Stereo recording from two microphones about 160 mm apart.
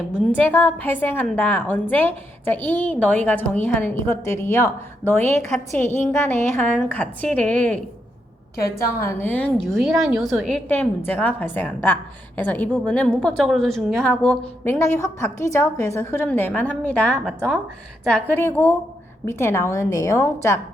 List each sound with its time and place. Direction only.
0.3 s a woman's voice: 10° left (ahead or behind)
9.0 s a woman's voice: 10° left (ahead or behind)
10.7 s a woman's voice: 10° left (ahead or behind)